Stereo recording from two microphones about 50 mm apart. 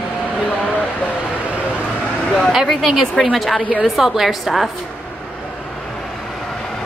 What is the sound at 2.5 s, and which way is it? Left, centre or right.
A woman's voice, centre.